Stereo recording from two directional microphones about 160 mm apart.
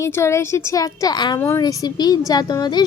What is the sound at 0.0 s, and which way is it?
A woman's voice, 15° left (ahead or behind).